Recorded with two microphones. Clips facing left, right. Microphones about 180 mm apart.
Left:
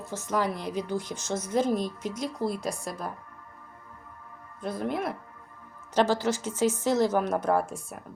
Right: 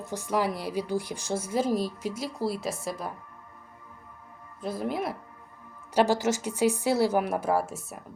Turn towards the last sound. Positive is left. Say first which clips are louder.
# left 1 dB
turn(degrees=-5)  # may be behind; listen again after turning